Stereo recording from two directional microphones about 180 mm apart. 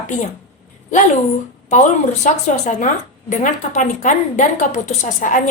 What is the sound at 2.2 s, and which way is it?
A woman's voice, 40° left (ahead or behind).